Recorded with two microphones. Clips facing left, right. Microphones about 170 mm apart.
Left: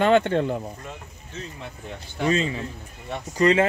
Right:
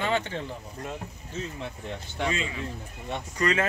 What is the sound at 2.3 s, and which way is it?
A man's voice, 35° left (ahead or behind).